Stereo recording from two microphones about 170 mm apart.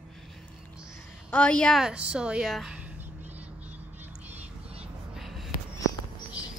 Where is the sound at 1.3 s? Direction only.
5° left (ahead or behind).